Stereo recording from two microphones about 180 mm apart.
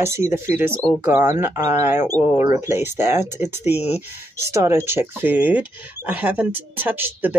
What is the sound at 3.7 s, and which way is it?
Speech, 35° left (ahead or behind).